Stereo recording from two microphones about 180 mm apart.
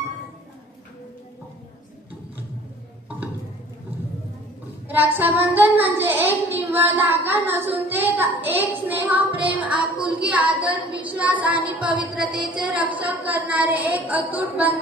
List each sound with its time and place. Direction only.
4.8 s a child's voice: 10° right (ahead or behind)
12.3 s a woman's voice: 25° right (ahead or behind)
12.7 s a child's voice: 10° right (ahead or behind)